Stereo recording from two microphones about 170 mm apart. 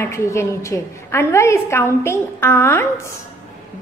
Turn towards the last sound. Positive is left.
turn(degrees=15)  # may be behind; listen again after turning